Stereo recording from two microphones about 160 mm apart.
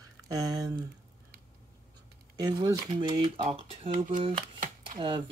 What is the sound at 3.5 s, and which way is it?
Speech, 40° right (ahead or behind).